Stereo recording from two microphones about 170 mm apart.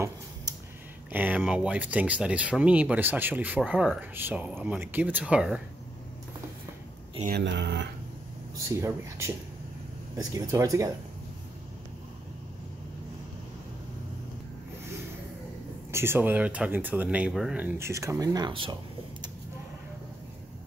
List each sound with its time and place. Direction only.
1.1 s speech: 10° right (ahead or behind)
7.2 s speech: 80° right
8.6 s speech: 15° right (ahead or behind)
15.9 s speech: 15° right (ahead or behind)